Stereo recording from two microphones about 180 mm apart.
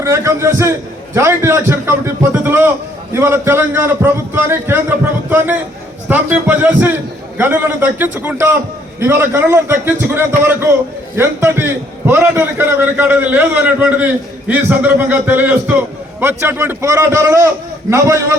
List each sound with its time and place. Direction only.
0.0 s a man's voice: 15° right (ahead or behind)